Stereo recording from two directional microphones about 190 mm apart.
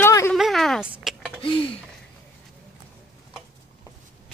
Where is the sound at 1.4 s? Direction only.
25° left (ahead or behind).